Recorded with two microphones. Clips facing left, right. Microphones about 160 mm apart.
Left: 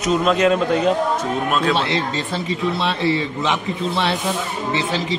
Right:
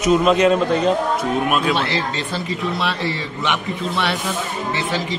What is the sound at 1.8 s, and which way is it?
Speech, 25° left (ahead or behind).